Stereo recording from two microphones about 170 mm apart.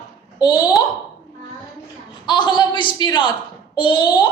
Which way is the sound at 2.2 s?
25° left (ahead or behind).